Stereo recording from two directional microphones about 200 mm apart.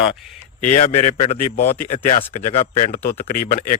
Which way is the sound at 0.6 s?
40° left (ahead or behind).